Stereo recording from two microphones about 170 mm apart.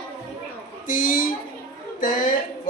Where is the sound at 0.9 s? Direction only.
55° left (ahead or behind).